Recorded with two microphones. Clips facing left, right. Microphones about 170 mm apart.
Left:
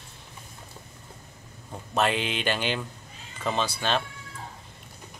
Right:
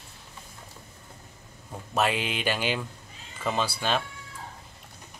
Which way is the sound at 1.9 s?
10° right (ahead or behind).